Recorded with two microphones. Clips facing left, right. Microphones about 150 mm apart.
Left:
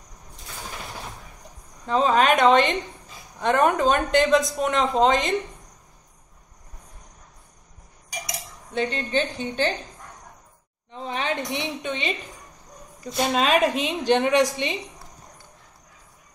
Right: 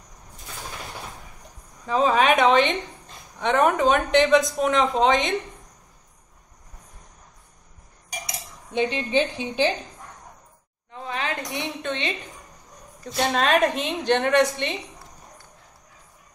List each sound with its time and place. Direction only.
1.9 s a woman's voice: 5° right (ahead or behind)
8.7 s a woman's voice: 10° right (ahead or behind)
10.9 s a sound: 25° left (ahead or behind)
11.8 s a woman's voice: 10° left (ahead or behind)